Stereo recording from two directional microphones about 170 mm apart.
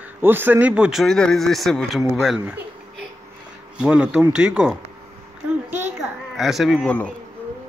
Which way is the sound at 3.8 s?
5° right (ahead or behind).